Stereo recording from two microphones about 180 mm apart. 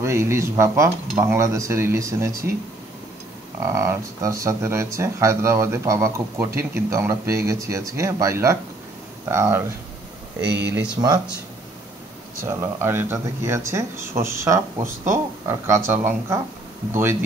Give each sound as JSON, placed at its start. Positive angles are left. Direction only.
{"t": 0.0, "sound": "speech", "side_deg": -15}
{"t": 3.6, "sound": "speech", "side_deg": -15}
{"t": 10.4, "sound": "speech", "side_deg": -70}
{"t": 12.4, "sound": "speech", "side_deg": -15}